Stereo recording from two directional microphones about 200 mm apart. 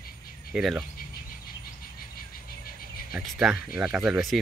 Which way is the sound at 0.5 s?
5° right (ahead or behind).